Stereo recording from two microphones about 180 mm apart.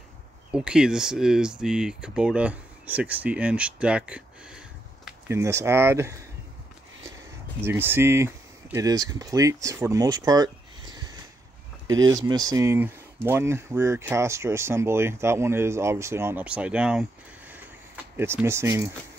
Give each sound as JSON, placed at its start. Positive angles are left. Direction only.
{"t": 0.5, "sound": "speech", "side_deg": -5}
{"t": 5.4, "sound": "speech", "side_deg": -15}
{"t": 7.6, "sound": "speech", "side_deg": -15}
{"t": 18.1, "sound": "speech", "side_deg": -10}